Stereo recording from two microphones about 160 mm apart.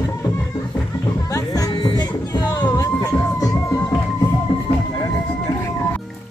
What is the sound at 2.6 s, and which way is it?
Music, 10° left (ahead or behind).